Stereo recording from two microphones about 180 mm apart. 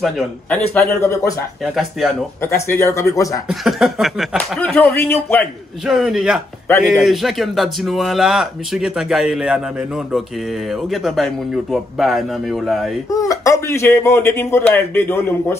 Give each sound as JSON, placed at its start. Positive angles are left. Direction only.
{"t": 0.0, "sound": "speech", "side_deg": 0}
{"t": 0.7, "sound": "speech", "side_deg": 15}
{"t": 1.6, "sound": "speech", "side_deg": 0}
{"t": 2.4, "sound": "speech", "side_deg": 15}
{"t": 3.4, "sound": "speech", "side_deg": 0}
{"t": 5.9, "sound": "speech", "side_deg": 0}
{"t": 13.1, "sound": "speech", "side_deg": 20}